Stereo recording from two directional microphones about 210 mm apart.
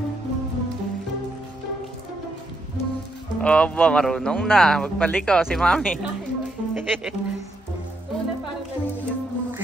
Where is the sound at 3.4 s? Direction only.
5° left (ahead or behind).